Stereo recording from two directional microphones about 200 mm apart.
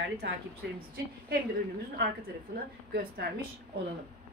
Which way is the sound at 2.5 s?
50° right (ahead or behind).